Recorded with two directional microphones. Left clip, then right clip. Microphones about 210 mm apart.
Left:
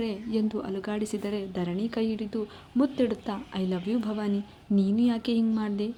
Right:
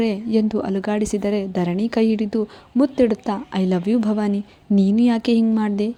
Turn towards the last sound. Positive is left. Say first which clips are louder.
# right 8 dB
turn(degrees=-30)  # may be behind; listen again after turning